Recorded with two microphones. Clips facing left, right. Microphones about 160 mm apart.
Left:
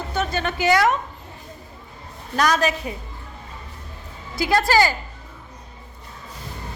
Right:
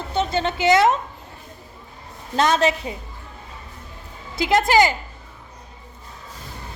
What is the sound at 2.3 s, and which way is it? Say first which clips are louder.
Speech: right 2 dB; 25° right (ahead or behind).